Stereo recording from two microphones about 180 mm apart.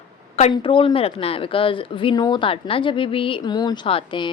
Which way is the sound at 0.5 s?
30° left (ahead or behind).